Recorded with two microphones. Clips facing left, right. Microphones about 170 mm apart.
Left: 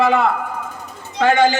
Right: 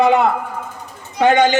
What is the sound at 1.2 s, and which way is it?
Speech, 20° right (ahead or behind).